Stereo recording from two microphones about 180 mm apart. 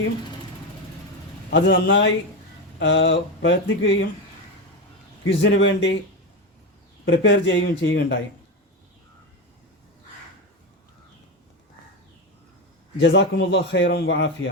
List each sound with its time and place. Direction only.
1.5 s a man's voice: 70° left (ahead or behind); by 4.0 s 90° left
5.4 s speech: 90° left
7.0 s speech: 90° left
13.0 s a man's voice: 80° left